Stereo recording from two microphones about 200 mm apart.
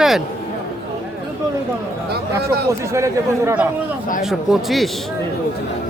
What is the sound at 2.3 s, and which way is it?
Speech, 15° right (ahead or behind).